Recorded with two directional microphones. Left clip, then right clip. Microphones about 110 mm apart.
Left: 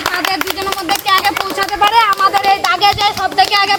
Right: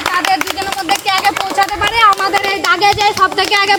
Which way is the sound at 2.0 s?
20° right (ahead or behind).